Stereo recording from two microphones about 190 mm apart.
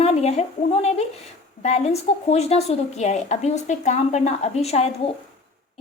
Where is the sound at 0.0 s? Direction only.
35° left (ahead or behind).